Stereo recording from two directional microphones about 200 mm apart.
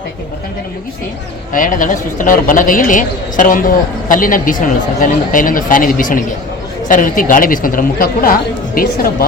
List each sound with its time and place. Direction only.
1.5 s a woman's voice: 40° left (ahead or behind)